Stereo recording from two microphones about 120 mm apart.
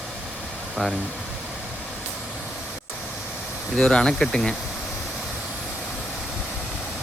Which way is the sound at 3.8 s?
5° left (ahead or behind).